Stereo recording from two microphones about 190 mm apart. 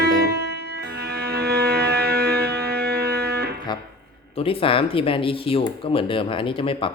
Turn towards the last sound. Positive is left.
turn(degrees=25)  # may be behind; listen again after turning